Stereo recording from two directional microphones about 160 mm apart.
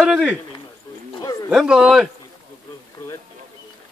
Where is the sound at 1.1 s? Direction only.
25° left (ahead or behind).